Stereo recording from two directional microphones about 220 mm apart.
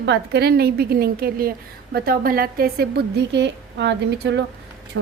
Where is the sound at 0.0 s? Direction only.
50° right (ahead or behind).